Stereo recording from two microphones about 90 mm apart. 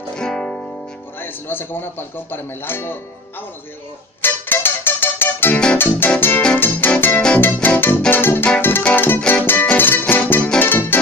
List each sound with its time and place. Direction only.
0.1 s music: 10° left (ahead or behind)
1.2 s speech: 25° left (ahead or behind)
4.2 s music: 25° left (ahead or behind)
8.1 s speech: 25° left (ahead or behind)
8.5 s music: 25° left (ahead or behind)